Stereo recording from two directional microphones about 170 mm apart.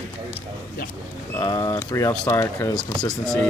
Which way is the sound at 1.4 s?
20° left (ahead or behind).